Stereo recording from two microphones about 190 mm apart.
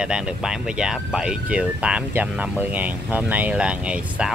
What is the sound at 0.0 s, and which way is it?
Speech, 5° right (ahead or behind).